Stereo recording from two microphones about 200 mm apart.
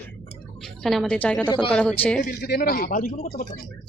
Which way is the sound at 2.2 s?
55° left (ahead or behind).